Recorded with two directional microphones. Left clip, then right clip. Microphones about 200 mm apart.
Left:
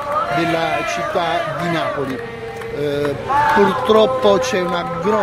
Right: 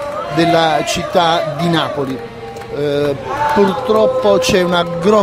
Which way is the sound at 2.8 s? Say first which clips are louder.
Right 4 dB; 15° right (ahead or behind).